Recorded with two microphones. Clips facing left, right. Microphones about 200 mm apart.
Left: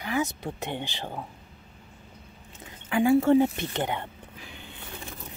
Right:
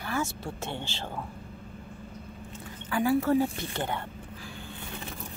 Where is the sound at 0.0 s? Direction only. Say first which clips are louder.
Left 3 dB; 15° left (ahead or behind).